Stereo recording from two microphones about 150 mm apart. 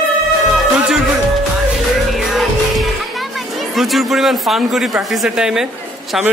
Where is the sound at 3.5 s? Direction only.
Centre (ahead or behind).